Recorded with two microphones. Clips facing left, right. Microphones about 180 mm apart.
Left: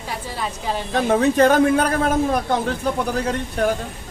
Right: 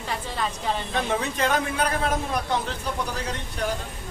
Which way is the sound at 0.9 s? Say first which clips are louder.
Left 14 dB; 45° left (ahead or behind).